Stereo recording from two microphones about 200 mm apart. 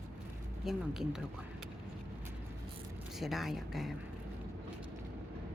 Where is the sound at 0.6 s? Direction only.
Centre (ahead or behind).